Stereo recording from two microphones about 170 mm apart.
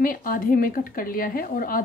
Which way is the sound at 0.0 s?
55° left (ahead or behind).